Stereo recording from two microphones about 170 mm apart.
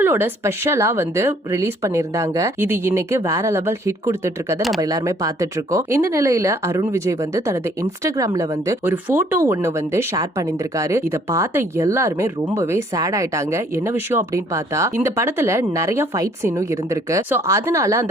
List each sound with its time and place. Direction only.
0.0 s speech: 15° right (ahead or behind)